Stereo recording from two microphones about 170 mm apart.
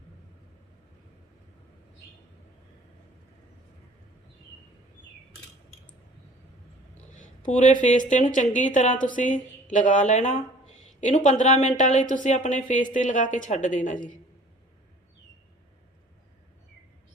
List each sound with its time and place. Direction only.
7.2 s a woman's voice: 45° left (ahead or behind)